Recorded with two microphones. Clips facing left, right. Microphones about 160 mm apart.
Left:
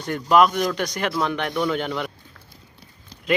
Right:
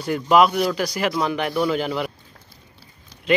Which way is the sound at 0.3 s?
5° right (ahead or behind).